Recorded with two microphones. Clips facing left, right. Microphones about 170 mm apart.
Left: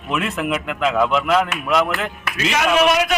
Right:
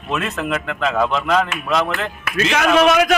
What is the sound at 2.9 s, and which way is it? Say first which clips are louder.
Speech: right 3 dB; 50° right (ahead or behind).